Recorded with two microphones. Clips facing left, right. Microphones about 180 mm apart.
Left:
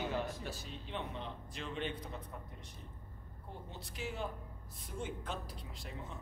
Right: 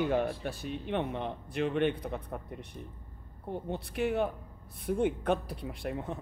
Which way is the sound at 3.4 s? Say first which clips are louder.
Right 13 dB; 60° right (ahead or behind).